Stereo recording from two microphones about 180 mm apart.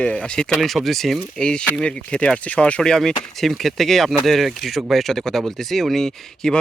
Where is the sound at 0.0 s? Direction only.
5° left (ahead or behind).